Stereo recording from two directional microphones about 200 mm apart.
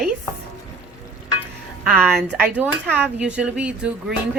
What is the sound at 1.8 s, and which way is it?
A woman's voice, 5° right (ahead or behind).